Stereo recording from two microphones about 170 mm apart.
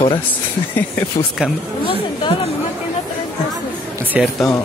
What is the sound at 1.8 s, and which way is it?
Speech, 30° left (ahead or behind).